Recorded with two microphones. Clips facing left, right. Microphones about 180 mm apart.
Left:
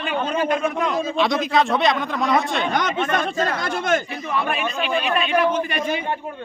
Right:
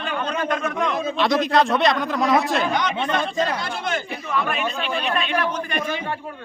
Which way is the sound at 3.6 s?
45° left (ahead or behind).